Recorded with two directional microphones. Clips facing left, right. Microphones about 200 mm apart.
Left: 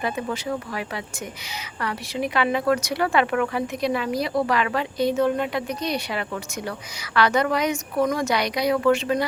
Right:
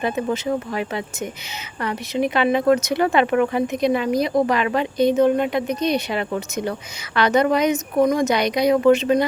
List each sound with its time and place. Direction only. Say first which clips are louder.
0.0 s speech: right 5 dB; 25° right (ahead or behind)